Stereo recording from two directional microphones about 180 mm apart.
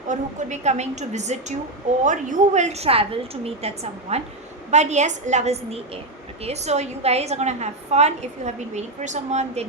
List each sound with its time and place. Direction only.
0.1 s a woman's voice: 40° right (ahead or behind)